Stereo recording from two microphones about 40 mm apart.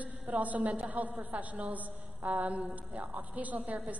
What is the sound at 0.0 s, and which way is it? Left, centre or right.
A woman's voice, right.